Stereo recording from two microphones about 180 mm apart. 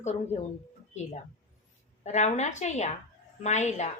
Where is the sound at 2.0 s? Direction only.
40° left (ahead or behind).